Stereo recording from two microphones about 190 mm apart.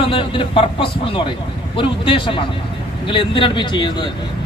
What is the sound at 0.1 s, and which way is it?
Speech, 25° left (ahead or behind).